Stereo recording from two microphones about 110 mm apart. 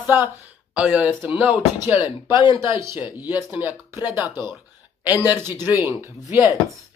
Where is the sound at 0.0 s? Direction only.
20° right (ahead or behind).